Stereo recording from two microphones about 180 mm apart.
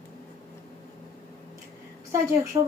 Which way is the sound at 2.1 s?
15° right (ahead or behind).